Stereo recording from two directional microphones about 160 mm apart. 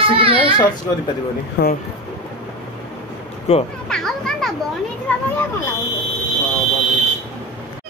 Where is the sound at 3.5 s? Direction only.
45° left (ahead or behind).